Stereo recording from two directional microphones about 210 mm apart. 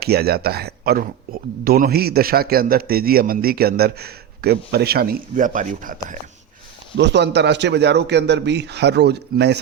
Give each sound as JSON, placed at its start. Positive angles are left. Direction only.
{"t": 0.0, "sound": "speech", "side_deg": -50}
{"t": 6.9, "sound": "speech", "side_deg": -55}